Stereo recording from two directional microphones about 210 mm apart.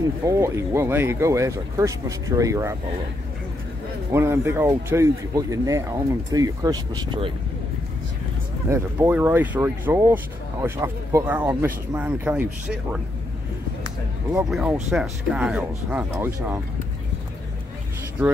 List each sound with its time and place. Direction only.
0.2 s speech: 15° right (ahead or behind)
4.1 s speech: 10° right (ahead or behind)
8.6 s speech: 15° right (ahead or behind)
13.8 s a sound: 15° right (ahead or behind)
14.5 s speech: 5° right (ahead or behind)